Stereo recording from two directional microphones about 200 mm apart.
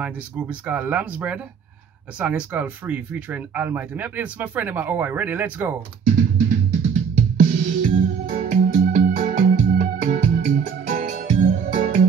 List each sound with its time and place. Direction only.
0.0 s speech: 5° right (ahead or behind)
6.9 s music: 40° right (ahead or behind)